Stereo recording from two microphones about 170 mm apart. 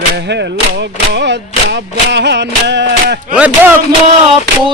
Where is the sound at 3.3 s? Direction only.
10° right (ahead or behind).